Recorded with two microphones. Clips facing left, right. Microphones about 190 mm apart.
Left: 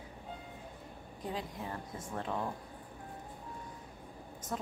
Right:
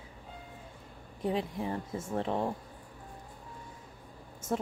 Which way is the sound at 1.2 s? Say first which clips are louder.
Right 8 dB; 25° right (ahead or behind).